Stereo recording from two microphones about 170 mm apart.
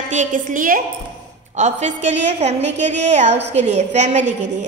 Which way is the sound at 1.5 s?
45° right (ahead or behind).